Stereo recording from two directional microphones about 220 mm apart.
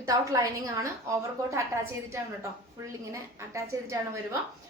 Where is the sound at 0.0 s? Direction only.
15° right (ahead or behind).